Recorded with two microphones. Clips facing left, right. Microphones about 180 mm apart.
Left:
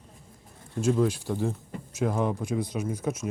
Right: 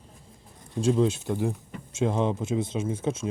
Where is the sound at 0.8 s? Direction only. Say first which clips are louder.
Right 1 dB; 30° right (ahead or behind).